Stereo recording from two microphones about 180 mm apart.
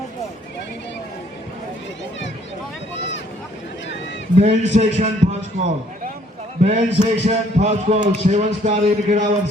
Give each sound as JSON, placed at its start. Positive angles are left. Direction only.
{"t": 4.4, "sound": "a man's voice", "side_deg": -40}